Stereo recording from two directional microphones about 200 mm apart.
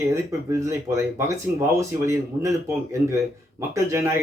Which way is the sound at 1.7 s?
15° right (ahead or behind).